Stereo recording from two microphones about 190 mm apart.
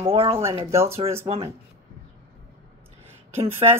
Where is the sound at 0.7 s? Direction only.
15° right (ahead or behind).